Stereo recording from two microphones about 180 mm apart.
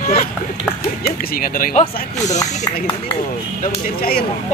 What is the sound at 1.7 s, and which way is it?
Speech, 40° left (ahead or behind).